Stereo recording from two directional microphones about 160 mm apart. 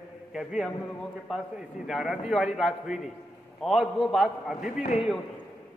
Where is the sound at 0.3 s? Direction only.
5° right (ahead or behind).